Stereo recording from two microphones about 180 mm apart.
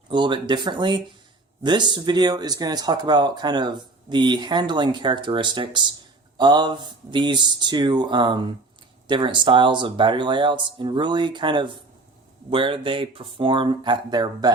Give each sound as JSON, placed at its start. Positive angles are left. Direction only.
{"t": 0.1, "sound": "speech", "side_deg": -25}